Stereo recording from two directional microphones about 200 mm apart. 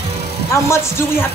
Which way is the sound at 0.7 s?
15° left (ahead or behind).